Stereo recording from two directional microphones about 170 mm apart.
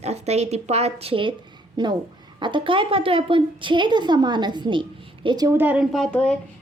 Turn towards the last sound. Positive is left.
turn(degrees=5)  # may be behind; listen again after turning